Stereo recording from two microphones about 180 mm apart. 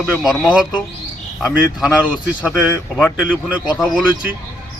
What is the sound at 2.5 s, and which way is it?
A man's voice, centre (ahead or behind).